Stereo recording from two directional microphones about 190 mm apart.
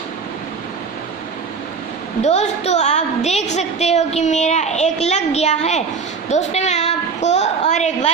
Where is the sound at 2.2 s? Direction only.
35° left (ahead or behind).